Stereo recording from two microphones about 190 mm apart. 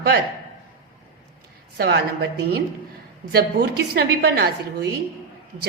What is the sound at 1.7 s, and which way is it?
A woman's voice, 60° right (ahead or behind).